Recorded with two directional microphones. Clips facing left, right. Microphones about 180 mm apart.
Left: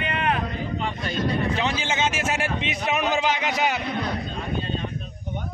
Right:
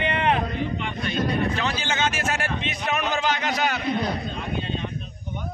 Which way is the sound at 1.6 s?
25° left (ahead or behind).